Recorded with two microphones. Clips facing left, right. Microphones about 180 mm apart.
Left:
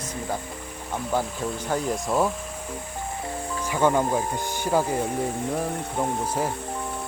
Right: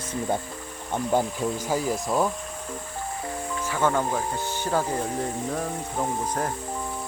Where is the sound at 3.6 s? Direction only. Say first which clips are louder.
Left 3 dB; 15° left (ahead or behind).